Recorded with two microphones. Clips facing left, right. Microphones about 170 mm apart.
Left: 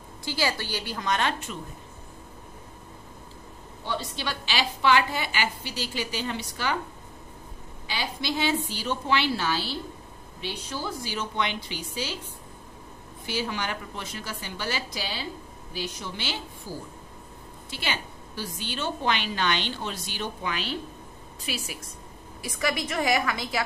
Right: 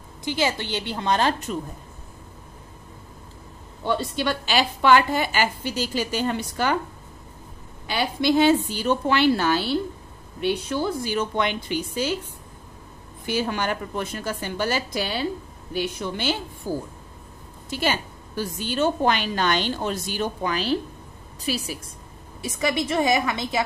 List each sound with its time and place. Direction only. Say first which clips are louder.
0.2 s a woman's voice: right 4 dB; 20° right (ahead or behind); by 1.6 s 35° right (ahead or behind)
3.8 s a woman's voice: right 8 dB; 50° right (ahead or behind)
7.8 s a woman's voice: right 9 dB; 55° right (ahead or behind)
13.2 s a woman's voice: right 5 dB; 50° right (ahead or behind)
22.4 s a woman's voice: right 4 dB; 25° right (ahead or behind)